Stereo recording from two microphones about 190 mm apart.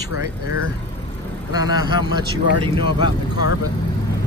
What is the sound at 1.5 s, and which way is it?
Speech, 20° right (ahead or behind).